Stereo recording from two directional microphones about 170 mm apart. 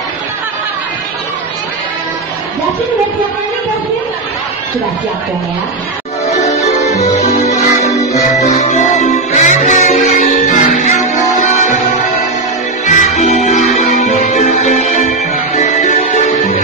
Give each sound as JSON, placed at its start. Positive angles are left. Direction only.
{"t": 6.4, "sound": "music", "side_deg": 40}
{"t": 13.2, "sound": "music", "side_deg": 45}